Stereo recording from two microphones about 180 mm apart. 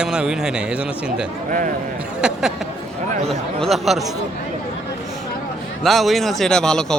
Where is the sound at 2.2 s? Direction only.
5° right (ahead or behind).